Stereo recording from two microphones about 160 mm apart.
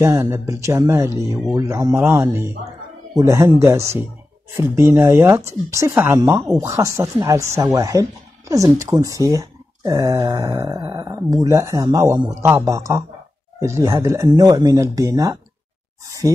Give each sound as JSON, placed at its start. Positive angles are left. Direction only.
{"t": 0.0, "sound": "speech", "side_deg": -20}